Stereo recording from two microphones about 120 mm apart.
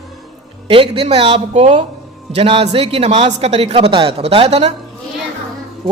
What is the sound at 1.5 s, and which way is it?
Speech, 65° right (ahead or behind).